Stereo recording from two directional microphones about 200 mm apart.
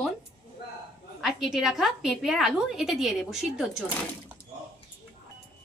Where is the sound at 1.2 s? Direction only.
Centre (ahead or behind).